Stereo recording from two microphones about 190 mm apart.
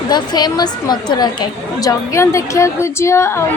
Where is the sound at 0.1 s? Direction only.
20° left (ahead or behind).